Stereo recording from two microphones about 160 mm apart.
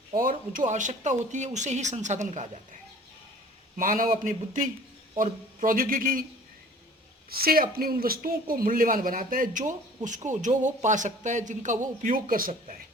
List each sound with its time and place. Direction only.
0.2 s speech: 60° right (ahead or behind)
3.8 s speech: 60° right (ahead or behind)
7.3 s speech: 70° right (ahead or behind)